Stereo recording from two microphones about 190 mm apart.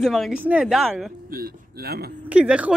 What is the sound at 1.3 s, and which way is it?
Speech, 55° right (ahead or behind).